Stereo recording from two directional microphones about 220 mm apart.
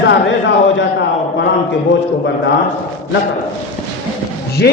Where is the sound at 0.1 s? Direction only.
55° left (ahead or behind).